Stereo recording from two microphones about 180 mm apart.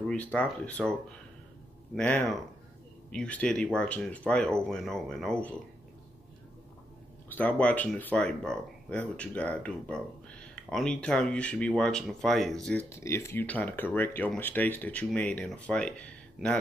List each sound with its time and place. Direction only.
0.0 s speech: 5° left (ahead or behind)
2.0 s speech: 5° left (ahead or behind)
7.3 s speech: 10° left (ahead or behind)
12.9 s speech: 15° left (ahead or behind)